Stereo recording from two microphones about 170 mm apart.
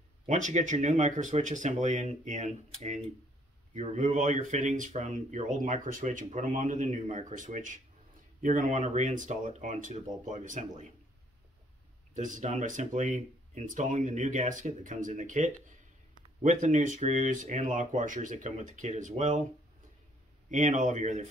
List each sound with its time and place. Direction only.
0.3 s speech: 45° right (ahead or behind)
12.1 s speech: 50° right (ahead or behind)
20.4 s speech: 45° right (ahead or behind)